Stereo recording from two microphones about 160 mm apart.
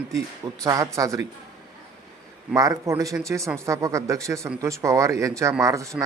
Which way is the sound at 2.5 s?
20° right (ahead or behind).